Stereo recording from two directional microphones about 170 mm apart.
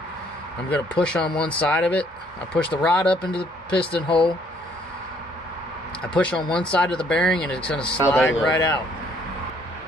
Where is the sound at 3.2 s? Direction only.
30° left (ahead or behind).